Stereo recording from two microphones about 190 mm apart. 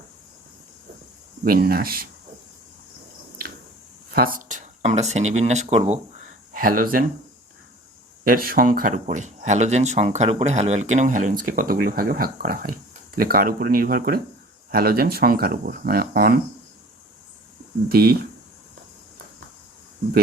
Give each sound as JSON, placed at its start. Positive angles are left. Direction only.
{"t": 1.5, "sound": "speech", "side_deg": -50}
{"t": 4.1, "sound": "speech", "side_deg": -50}
{"t": 6.6, "sound": "speech", "side_deg": -45}
{"t": 8.2, "sound": "speech", "side_deg": -50}
{"t": 17.8, "sound": "speech", "side_deg": -55}